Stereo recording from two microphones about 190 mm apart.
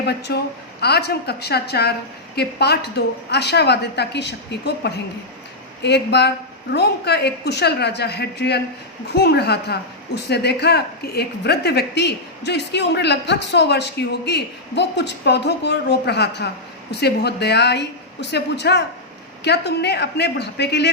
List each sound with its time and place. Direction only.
0.0 s a woman's voice: 60° left (ahead or behind)